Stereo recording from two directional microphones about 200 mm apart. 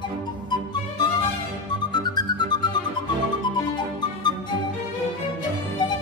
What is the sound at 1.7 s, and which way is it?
Music, 20° left (ahead or behind).